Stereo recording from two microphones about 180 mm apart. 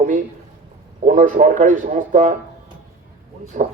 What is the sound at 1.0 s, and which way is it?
Speech, 45° right (ahead or behind).